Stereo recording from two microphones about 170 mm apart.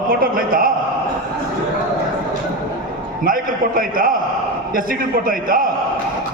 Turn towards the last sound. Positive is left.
turn(degrees=-55)  # may be behind; listen again after turning